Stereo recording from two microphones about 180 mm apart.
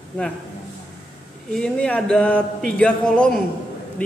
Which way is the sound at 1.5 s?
5° left (ahead or behind).